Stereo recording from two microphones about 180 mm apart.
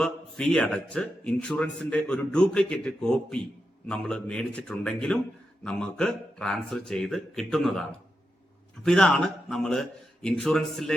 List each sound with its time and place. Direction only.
0.0 s a man's voice: 5° left (ahead or behind)
8.8 s a man's voice: 5° left (ahead or behind)